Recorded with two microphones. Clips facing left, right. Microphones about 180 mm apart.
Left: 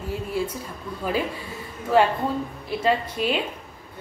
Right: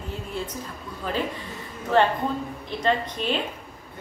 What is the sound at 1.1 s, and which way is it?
Speech, 10° left (ahead or behind).